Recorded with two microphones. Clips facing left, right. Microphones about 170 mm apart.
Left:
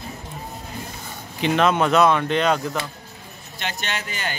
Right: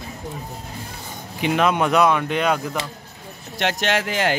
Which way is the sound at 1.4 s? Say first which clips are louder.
Even; 10° right (ahead or behind).